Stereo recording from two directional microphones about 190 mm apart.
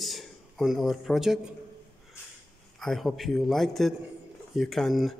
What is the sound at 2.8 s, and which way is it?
Speech, centre (ahead or behind).